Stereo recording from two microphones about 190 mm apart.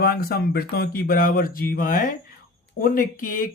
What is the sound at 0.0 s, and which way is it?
Speech, 55° left (ahead or behind).